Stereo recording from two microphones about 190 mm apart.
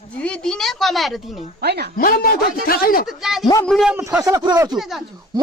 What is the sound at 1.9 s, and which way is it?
Speech, 50° left (ahead or behind).